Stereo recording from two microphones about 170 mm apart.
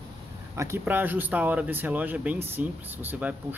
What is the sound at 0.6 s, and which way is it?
Speech, 15° right (ahead or behind).